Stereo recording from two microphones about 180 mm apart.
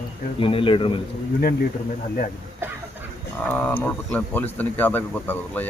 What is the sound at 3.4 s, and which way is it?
Speech, 10° left (ahead or behind).